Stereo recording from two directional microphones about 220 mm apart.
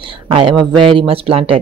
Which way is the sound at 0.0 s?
25° right (ahead or behind).